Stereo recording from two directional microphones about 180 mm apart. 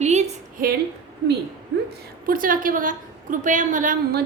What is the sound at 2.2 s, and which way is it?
A woman's voice, 50° right (ahead or behind).